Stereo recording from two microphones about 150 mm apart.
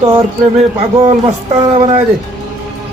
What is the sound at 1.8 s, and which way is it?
Speech, 40° right (ahead or behind).